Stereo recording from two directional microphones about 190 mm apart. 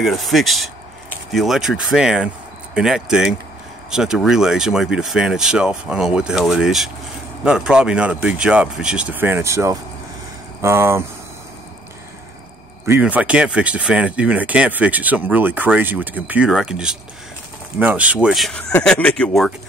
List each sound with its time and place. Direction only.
0.0 s speech: centre (ahead or behind)
12.8 s speech: 10° right (ahead or behind)